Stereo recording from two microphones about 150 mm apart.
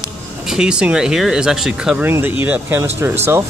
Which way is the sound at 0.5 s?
5° right (ahead or behind).